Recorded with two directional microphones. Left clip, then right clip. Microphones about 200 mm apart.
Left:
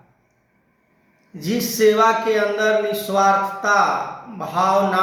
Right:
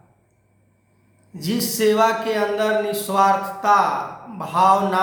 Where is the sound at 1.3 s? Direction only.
15° right (ahead or behind).